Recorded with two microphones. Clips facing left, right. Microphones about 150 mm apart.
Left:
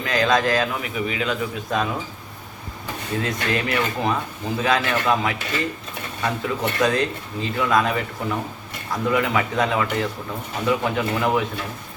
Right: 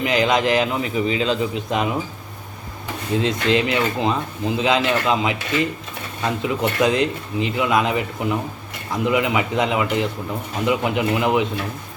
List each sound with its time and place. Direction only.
0.0 s speech: 20° right (ahead or behind)
3.2 s speech: 20° right (ahead or behind)